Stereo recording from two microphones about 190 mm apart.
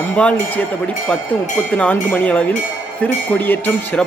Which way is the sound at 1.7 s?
10° left (ahead or behind).